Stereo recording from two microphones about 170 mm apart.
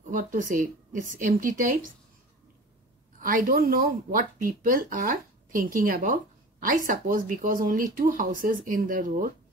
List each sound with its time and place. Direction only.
0.0 s a woman's voice: 50° right (ahead or behind)
3.2 s speech: 55° right (ahead or behind)